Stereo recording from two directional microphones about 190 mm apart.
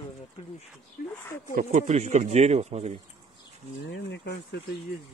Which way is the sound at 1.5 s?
35° right (ahead or behind).